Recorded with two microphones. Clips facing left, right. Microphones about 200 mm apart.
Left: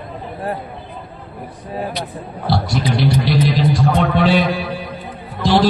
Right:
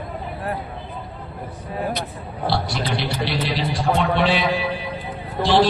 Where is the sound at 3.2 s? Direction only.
45° left (ahead or behind).